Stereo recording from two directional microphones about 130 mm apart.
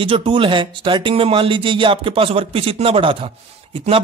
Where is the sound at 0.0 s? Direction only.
40° right (ahead or behind).